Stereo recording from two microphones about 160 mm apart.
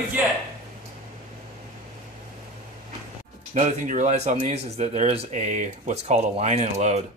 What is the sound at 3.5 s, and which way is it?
Speech, 50° right (ahead or behind).